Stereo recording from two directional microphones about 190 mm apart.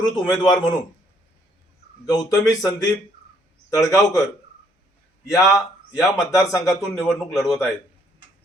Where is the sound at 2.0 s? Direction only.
20° left (ahead or behind).